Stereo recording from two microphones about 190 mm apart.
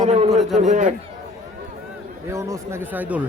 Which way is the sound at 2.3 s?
15° right (ahead or behind).